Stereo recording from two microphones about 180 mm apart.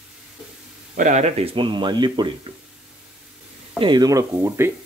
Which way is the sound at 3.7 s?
25° right (ahead or behind).